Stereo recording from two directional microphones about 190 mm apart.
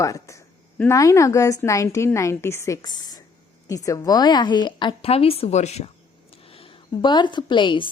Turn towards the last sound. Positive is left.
turn(degrees=25)  # may be behind; listen again after turning